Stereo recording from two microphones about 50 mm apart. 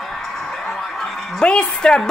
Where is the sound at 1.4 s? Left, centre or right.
Centre.